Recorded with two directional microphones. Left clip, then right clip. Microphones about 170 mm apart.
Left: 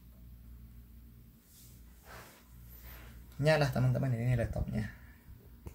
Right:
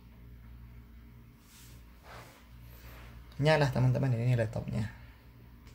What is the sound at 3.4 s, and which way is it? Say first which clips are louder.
Speech: right 2 dB; 25° right (ahead or behind).